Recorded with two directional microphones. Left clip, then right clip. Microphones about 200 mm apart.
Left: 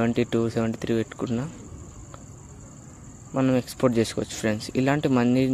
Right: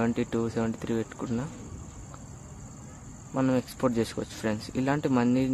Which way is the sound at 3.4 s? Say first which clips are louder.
Left 4 dB; 15° left (ahead or behind).